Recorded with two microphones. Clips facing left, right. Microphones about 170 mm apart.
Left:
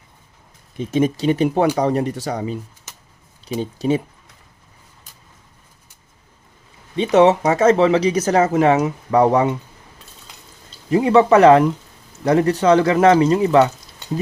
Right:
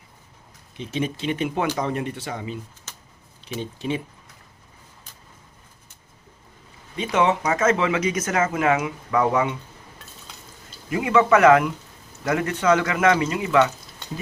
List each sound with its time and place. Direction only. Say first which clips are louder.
0.8 s speech: left 8 dB; 45° left (ahead or behind)
3.6 s speech: left 8 dB; 40° left (ahead or behind)
6.9 s speech: left 8 dB; 35° left (ahead or behind)
10.8 s speech: left 6 dB; 35° left (ahead or behind)